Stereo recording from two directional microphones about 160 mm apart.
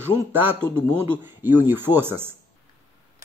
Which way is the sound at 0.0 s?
15° right (ahead or behind).